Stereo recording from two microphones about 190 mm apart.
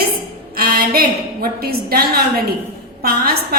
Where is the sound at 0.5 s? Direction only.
50° right (ahead or behind).